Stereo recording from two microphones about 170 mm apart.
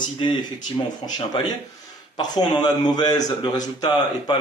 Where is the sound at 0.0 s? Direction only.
25° left (ahead or behind).